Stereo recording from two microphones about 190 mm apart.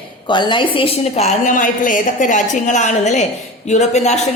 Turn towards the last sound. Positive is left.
turn(degrees=35)  # may be behind; listen again after turning